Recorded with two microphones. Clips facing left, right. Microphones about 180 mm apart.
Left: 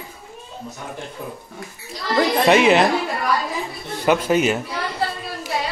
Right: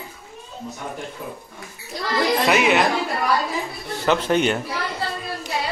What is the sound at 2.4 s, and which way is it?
Speech, 30° left (ahead or behind).